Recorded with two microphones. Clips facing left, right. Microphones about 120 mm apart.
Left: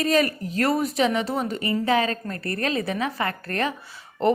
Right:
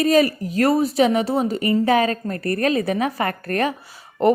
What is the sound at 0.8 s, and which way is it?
A woman's voice, 35° right (ahead or behind).